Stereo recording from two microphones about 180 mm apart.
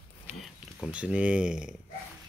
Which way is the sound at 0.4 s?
5° right (ahead or behind).